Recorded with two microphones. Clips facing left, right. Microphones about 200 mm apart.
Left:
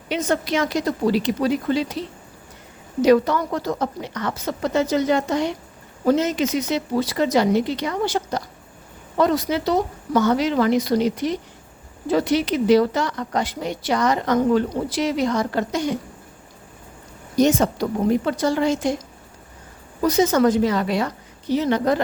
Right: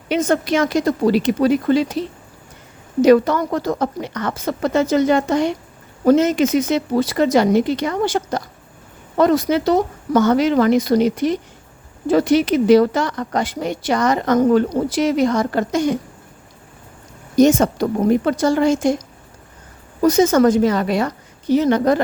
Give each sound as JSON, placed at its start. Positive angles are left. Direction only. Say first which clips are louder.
{"t": 0.1, "sound": "speech", "louder": "right 5 dB", "side_deg": -50}
{"t": 3.0, "sound": "speech", "louder": "right 4 dB", "side_deg": -50}
{"t": 17.3, "sound": "speech", "louder": "right 4 dB", "side_deg": -45}